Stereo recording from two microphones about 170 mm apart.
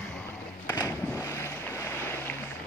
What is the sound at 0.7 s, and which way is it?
Boat, 15° left (ahead or behind).